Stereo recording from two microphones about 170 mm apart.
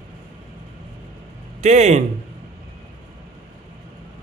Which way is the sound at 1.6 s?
40° right (ahead or behind).